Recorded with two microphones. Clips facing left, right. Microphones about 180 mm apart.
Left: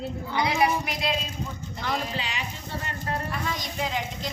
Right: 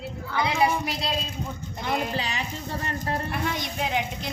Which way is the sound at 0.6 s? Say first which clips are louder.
Even; 30° right (ahead or behind).